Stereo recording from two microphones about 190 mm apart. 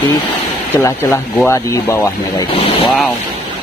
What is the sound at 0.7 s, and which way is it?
Speech, 15° left (ahead or behind).